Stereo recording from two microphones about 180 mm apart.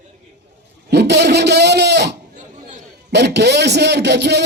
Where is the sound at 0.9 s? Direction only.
65° right (ahead or behind).